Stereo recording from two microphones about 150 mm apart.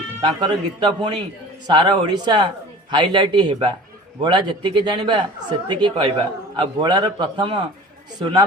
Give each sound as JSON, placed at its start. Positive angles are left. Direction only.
{"t": 0.2, "sound": "a man's voice", "side_deg": -30}